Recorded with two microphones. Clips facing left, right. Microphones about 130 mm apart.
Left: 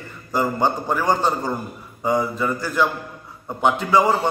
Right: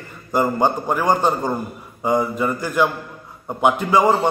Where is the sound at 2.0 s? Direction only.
15° right (ahead or behind).